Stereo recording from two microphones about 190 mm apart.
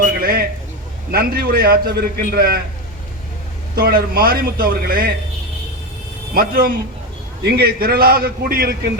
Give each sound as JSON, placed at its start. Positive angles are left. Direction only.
{"t": 0.0, "sound": "a sound", "side_deg": -50}
{"t": 1.1, "sound": "a man's voice", "side_deg": -50}
{"t": 3.8, "sound": "a man's voice", "side_deg": -50}
{"t": 6.3, "sound": "a man's voice", "side_deg": -50}